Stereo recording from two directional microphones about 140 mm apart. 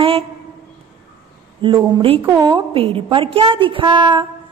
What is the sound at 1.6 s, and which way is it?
A woman's voice, 40° right (ahead or behind).